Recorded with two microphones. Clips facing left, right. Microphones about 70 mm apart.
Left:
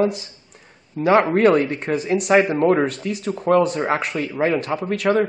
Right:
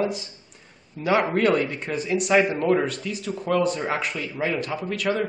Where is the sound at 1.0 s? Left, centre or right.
Left.